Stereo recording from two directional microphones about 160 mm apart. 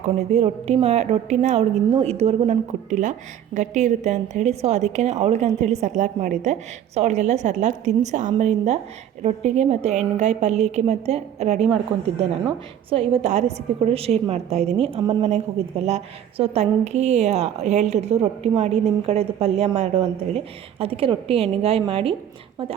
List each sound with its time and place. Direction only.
0.0 s a woman's voice: 40° right (ahead or behind)
12.9 s a woman's voice: 35° right (ahead or behind)